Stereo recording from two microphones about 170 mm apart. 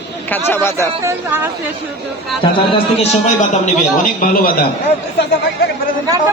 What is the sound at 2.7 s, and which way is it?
A man's voice, 40° left (ahead or behind).